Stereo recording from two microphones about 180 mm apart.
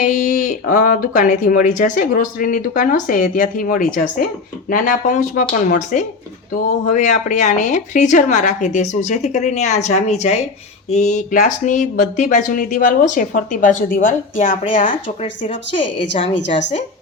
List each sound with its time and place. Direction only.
0.0 s speech: 45° left (ahead or behind)
14.8 s speech: 30° left (ahead or behind)